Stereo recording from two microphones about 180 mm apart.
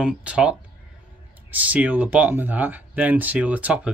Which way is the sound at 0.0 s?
5° right (ahead or behind).